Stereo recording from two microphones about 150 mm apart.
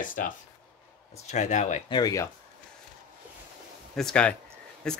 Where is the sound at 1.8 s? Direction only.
30° left (ahead or behind).